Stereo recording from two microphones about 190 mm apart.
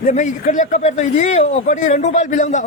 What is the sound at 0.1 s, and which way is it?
Speech, 40° left (ahead or behind).